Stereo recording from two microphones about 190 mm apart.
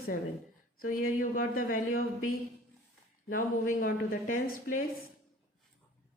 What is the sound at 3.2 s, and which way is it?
Speech, 45° left (ahead or behind).